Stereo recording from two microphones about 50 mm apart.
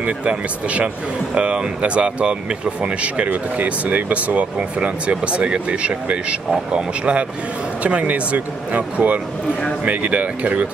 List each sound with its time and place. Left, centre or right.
0.0 s speech: right